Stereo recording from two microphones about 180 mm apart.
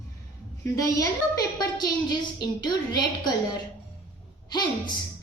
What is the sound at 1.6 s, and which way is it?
A woman's voice, 25° left (ahead or behind).